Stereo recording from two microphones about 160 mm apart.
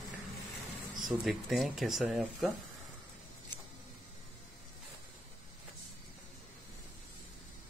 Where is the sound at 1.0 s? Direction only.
Centre (ahead or behind).